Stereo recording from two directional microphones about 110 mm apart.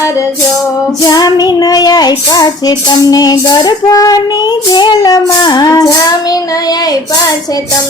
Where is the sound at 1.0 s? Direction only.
35° left (ahead or behind).